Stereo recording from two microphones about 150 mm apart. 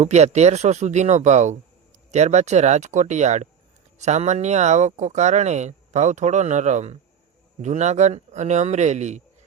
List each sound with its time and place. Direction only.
0.0 s speech: 50° right (ahead or behind)